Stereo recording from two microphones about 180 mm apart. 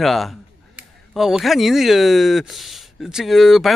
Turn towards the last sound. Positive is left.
turn(degrees=0)  # may be behind; listen again after turning